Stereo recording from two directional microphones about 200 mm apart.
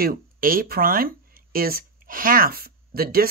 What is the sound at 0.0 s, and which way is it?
Speech, 45° right (ahead or behind).